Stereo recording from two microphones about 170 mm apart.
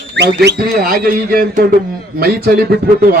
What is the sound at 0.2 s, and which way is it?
A man's voice, 70° right (ahead or behind).